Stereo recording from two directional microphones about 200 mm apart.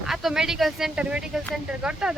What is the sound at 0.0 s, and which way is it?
Speech, centre (ahead or behind).